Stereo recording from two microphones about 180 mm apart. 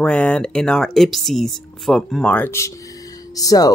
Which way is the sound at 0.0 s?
5° left (ahead or behind).